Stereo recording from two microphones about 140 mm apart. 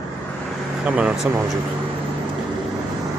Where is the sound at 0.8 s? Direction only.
10° right (ahead or behind).